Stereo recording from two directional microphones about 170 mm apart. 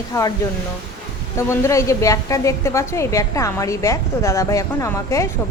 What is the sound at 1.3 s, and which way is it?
A woman's voice, 15° left (ahead or behind).